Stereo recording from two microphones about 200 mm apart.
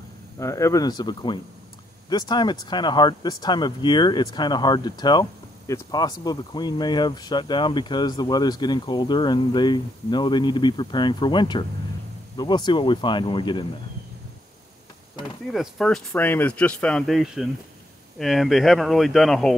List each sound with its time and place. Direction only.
0.4 s speech: 15° left (ahead or behind)
15.5 s speech: centre (ahead or behind)